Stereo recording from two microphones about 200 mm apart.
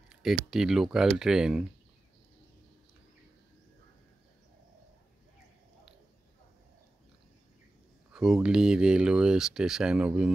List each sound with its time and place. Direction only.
0.1 s speech: centre (ahead or behind)
8.1 s speech: 5° right (ahead or behind)